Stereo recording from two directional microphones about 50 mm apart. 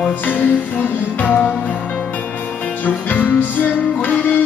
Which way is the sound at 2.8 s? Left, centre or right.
Left.